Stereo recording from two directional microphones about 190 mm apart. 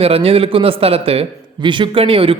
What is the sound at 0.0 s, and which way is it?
A man's voice, 30° right (ahead or behind).